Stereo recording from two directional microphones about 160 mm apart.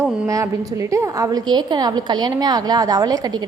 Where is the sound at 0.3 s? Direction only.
20° right (ahead or behind).